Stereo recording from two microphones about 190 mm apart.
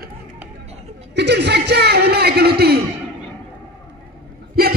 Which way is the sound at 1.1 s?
65° right (ahead or behind).